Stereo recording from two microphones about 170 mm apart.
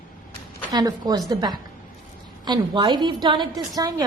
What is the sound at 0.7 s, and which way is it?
A woman's voice, 20° right (ahead or behind).